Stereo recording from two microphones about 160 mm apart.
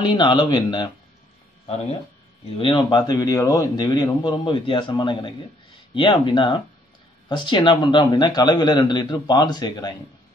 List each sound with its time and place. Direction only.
0.0 s a man's voice: 25° left (ahead or behind)
2.5 s a man's voice: 30° left (ahead or behind)